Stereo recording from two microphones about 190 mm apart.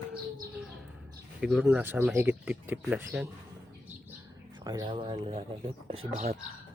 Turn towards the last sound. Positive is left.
turn(degrees=-30)  # may be behind; listen again after turning